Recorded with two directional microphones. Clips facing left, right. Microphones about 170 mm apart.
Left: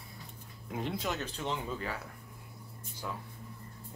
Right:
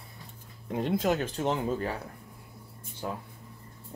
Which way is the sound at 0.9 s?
50° right (ahead or behind).